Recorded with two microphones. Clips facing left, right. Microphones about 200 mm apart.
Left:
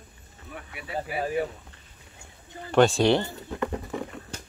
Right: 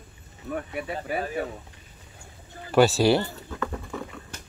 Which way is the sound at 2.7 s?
5° right (ahead or behind).